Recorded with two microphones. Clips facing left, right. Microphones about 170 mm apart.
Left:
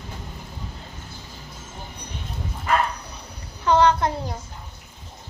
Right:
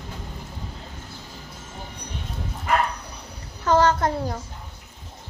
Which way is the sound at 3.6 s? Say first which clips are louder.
Left 1 dB; 45° right (ahead or behind).